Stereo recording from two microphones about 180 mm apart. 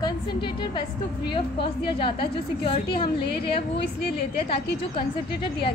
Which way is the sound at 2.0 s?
30° left (ahead or behind).